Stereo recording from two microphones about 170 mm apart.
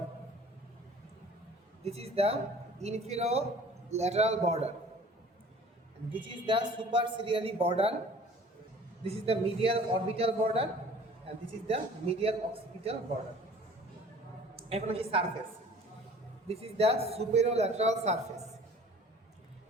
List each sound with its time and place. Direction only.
1.8 s a man's voice: 35° right (ahead or behind)
6.2 s a woman's voice: 30° right (ahead or behind)
9.0 s a man's voice: 35° right (ahead or behind)
11.7 s a man's voice: 35° right (ahead or behind)
14.5 s a woman's voice: 35° right (ahead or behind)
16.5 s a man's voice: 35° right (ahead or behind)